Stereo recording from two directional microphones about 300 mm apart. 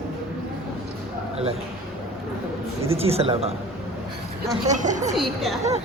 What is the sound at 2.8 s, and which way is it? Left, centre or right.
Speech, centre.